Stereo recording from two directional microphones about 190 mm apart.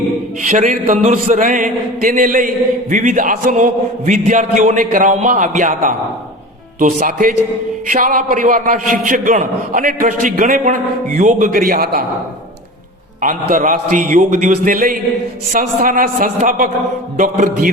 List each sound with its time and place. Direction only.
0.4 s a man's voice: 40° right (ahead or behind)
13.2 s a man's voice: 40° right (ahead or behind)